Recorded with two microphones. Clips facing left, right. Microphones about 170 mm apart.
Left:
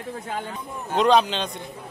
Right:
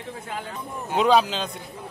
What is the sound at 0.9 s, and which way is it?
Speech, 5° right (ahead or behind).